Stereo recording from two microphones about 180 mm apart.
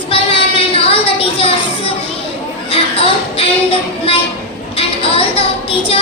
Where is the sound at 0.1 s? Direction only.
30° left (ahead or behind).